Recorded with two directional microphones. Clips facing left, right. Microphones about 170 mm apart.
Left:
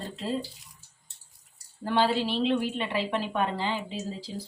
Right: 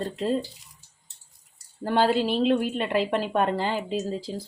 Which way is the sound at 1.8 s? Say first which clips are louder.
Right 3 dB; 45° right (ahead or behind).